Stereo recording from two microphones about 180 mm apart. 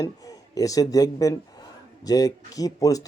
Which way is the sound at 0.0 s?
20° left (ahead or behind).